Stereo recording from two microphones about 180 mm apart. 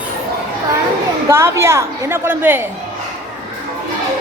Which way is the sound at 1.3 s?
15° right (ahead or behind).